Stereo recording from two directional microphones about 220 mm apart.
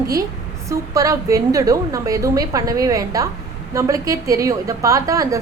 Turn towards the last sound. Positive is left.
turn(degrees=-15)  # may be behind; listen again after turning